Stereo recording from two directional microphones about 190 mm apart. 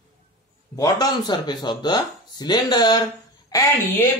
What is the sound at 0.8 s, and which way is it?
Speech, 20° left (ahead or behind).